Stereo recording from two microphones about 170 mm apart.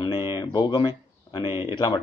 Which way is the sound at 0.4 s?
25° left (ahead or behind).